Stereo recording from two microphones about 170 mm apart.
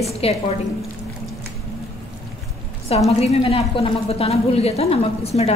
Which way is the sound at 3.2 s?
35° left (ahead or behind).